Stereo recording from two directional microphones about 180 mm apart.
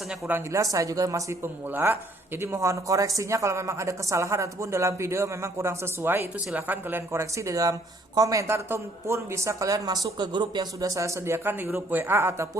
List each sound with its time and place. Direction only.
0.1 s speech: 10° right (ahead or behind)